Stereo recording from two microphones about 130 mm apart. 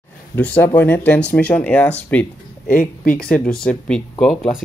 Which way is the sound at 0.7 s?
15° left (ahead or behind).